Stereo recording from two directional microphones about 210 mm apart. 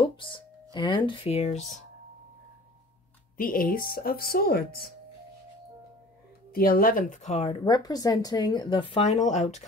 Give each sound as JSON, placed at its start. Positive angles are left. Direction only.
{"t": 0.0, "sound": "music", "side_deg": 25}
{"t": 0.7, "sound": "speech", "side_deg": 20}
{"t": 3.3, "sound": "speech", "side_deg": 40}
{"t": 6.5, "sound": "speech", "side_deg": 45}